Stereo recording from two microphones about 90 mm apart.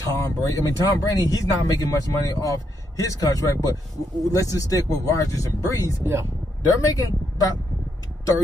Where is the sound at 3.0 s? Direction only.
40° left (ahead or behind).